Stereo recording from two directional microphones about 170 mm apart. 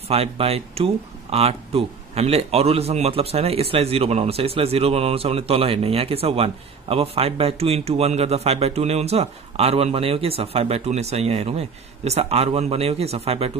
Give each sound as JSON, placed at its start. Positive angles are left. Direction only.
{"t": 0.1, "sound": "speech", "side_deg": -35}